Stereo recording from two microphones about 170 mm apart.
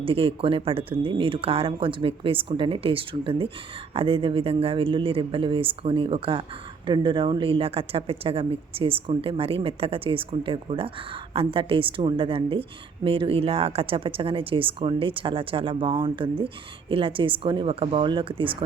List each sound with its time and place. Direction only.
0.0 s speech: 35° right (ahead or behind)